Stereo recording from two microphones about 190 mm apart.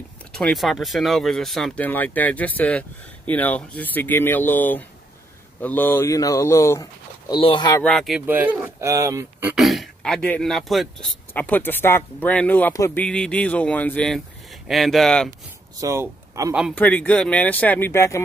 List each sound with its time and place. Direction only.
0.3 s speech: centre (ahead or behind)
7.3 s speech: 25° left (ahead or behind)
7.8 s speech: centre (ahead or behind)
15.8 s speech: 15° right (ahead or behind)
16.7 s speech: 10° left (ahead or behind)